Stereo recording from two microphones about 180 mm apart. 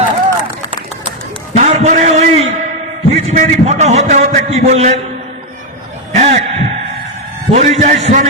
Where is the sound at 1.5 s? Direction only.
40° right (ahead or behind).